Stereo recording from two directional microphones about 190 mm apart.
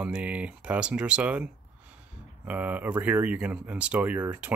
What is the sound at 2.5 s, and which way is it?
Speech, 10° right (ahead or behind).